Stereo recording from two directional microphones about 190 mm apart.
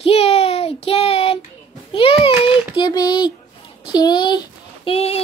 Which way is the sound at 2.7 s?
20° left (ahead or behind).